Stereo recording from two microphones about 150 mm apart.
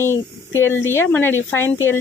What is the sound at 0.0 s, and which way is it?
Speech, 15° left (ahead or behind).